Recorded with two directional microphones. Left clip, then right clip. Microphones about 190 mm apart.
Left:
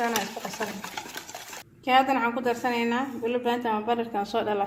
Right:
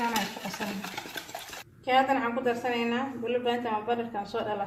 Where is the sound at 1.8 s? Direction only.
45° left (ahead or behind).